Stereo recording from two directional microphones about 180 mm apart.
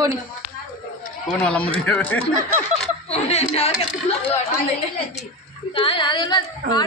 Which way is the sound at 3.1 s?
35° left (ahead or behind).